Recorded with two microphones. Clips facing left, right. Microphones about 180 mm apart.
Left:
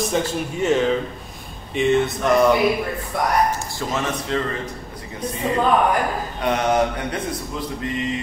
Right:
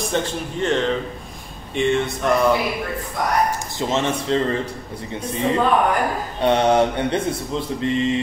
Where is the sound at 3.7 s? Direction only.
25° right (ahead or behind).